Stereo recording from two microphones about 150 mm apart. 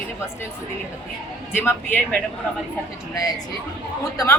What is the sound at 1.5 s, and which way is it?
Speech, 15° left (ahead or behind).